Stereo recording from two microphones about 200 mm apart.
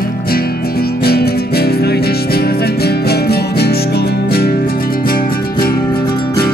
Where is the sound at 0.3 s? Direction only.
50° left (ahead or behind).